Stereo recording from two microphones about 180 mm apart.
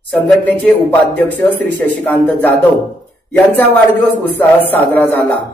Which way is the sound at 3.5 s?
10° left (ahead or behind).